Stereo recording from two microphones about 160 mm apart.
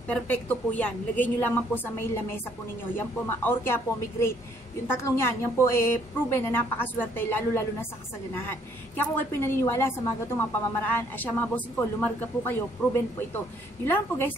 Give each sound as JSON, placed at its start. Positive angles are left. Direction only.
{"t": 0.1, "sound": "a woman's voice", "side_deg": 10}